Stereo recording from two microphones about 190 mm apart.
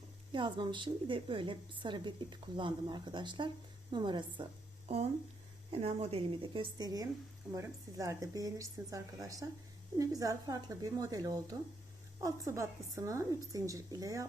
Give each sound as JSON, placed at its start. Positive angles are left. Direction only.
{"t": 0.3, "sound": "a woman's voice", "side_deg": -25}